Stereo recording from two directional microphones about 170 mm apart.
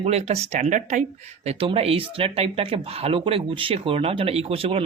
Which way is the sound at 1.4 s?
35° right (ahead or behind).